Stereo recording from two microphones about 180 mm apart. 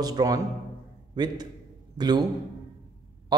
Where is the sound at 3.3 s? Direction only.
25° right (ahead or behind).